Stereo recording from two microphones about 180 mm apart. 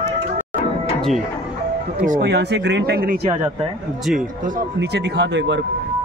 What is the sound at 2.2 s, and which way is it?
Speech, 70° right (ahead or behind).